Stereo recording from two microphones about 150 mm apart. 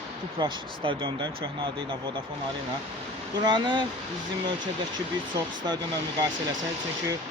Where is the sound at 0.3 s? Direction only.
35° right (ahead or behind).